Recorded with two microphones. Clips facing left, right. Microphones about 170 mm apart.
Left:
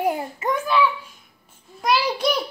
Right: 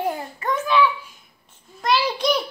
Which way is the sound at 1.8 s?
10° left (ahead or behind).